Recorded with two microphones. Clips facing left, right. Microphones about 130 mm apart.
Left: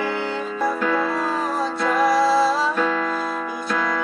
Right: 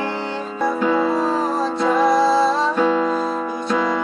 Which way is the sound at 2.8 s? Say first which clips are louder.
Right 5 dB; 20° right (ahead or behind).